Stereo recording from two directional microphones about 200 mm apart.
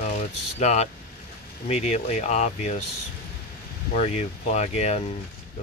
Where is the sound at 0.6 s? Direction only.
35° left (ahead or behind).